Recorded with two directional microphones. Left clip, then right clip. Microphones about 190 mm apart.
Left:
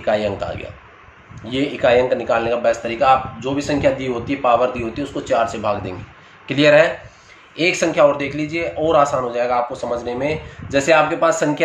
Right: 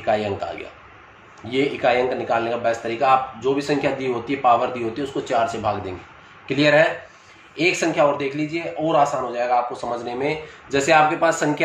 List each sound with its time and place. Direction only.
0.0 s a man's voice: 30° left (ahead or behind)